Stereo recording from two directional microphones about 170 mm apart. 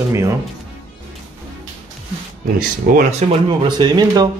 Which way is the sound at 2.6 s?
55° right (ahead or behind).